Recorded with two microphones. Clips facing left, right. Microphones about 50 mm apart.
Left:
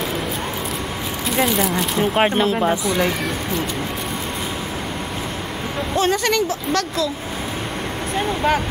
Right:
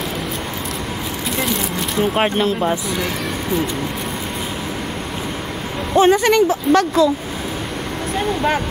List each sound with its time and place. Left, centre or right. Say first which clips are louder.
1.4 s speech: left 5 dB; centre
5.9 s speech: right 7 dB; centre